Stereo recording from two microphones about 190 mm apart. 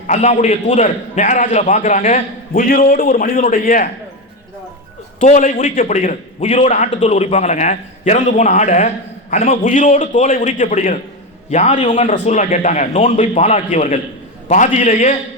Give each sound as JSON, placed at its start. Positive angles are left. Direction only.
{"t": 0.1, "sound": "a man's voice", "side_deg": 35}
{"t": 5.2, "sound": "a man's voice", "side_deg": 40}